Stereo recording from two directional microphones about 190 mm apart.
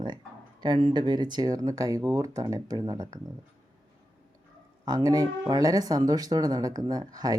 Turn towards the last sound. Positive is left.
turn(degrees=-20)  # may be behind; listen again after turning